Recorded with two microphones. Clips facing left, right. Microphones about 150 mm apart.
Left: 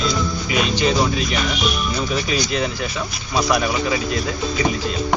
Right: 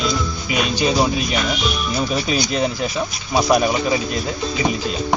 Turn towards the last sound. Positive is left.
turn(degrees=-25)  # may be behind; listen again after turning